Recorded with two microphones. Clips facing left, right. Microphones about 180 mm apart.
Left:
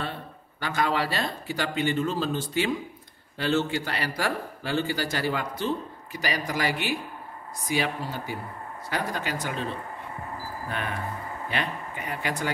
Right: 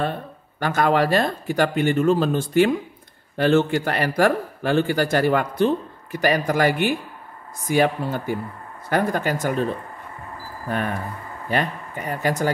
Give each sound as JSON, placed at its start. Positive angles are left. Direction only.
{"t": 0.0, "sound": "a man's voice", "side_deg": -50}
{"t": 10.7, "sound": "a man's voice", "side_deg": -45}